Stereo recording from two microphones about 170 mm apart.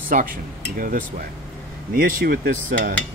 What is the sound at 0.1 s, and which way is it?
Speech, 55° right (ahead or behind).